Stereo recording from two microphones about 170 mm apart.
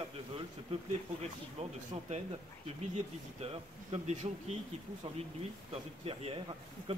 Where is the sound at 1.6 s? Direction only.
40° right (ahead or behind).